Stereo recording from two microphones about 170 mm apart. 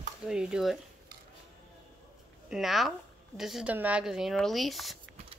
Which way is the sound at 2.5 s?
Centre (ahead or behind).